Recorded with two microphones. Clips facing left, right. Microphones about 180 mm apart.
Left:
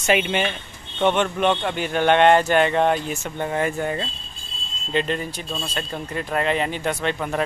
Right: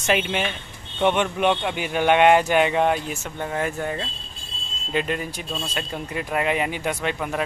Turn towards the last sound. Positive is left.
turn(degrees=-5)  # may be behind; listen again after turning